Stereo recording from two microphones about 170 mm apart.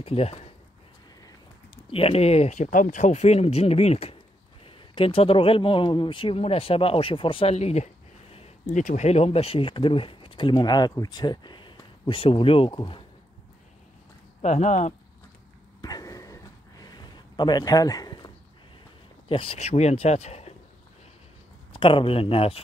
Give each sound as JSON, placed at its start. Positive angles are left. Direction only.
{"t": 0.0, "sound": "speech", "side_deg": 35}
{"t": 1.9, "sound": "speech", "side_deg": 35}
{"t": 14.4, "sound": "speech", "side_deg": 40}
{"t": 15.8, "sound": "a sound", "side_deg": 20}
{"t": 19.2, "sound": "speech", "side_deg": 30}
{"t": 21.7, "sound": "speech", "side_deg": 30}